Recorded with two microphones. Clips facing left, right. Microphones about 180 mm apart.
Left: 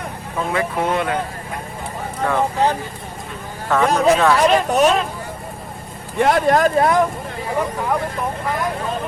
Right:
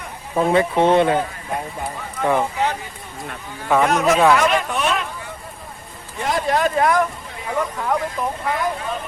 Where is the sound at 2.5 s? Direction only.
35° left (ahead or behind).